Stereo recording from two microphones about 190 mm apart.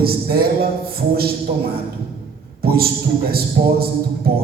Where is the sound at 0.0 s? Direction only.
55° right (ahead or behind).